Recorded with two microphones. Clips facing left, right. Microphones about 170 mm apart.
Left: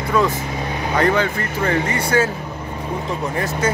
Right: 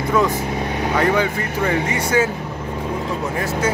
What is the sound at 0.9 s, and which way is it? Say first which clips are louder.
Speech: left 1 dB; 10° right (ahead or behind).